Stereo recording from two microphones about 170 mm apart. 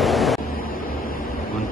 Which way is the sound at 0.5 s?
60° left (ahead or behind).